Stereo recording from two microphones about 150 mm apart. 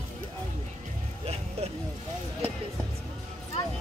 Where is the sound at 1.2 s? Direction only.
45° right (ahead or behind).